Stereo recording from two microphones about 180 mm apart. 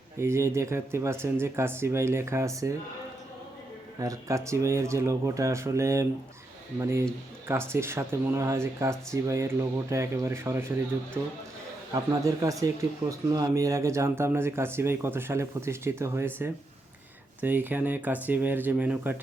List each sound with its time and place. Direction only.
0.2 s speech: 15° right (ahead or behind)
4.0 s speech: 20° right (ahead or behind)